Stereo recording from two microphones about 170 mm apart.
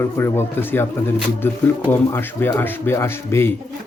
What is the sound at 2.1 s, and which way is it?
Speech, 15° left (ahead or behind).